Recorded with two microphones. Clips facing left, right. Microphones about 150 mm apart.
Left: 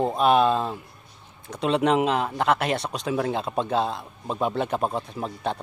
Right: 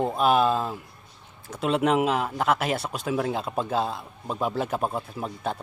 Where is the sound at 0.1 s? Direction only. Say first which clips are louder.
Left 2 dB; 5° right (ahead or behind).